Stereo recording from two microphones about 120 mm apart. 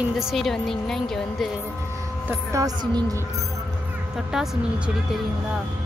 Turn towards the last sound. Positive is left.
turn(degrees=-5)  # may be behind; listen again after turning